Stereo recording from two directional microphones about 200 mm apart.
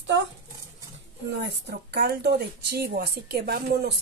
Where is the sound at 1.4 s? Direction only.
55° right (ahead or behind).